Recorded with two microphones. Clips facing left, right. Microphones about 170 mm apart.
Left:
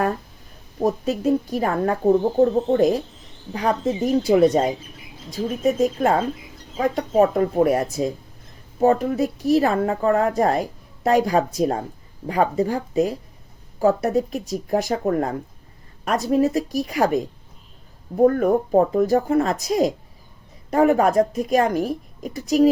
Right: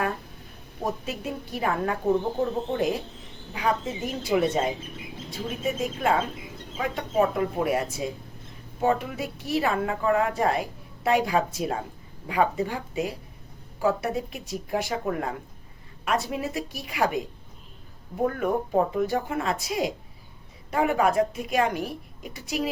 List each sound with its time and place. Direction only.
1.0 s speech: 40° left (ahead or behind)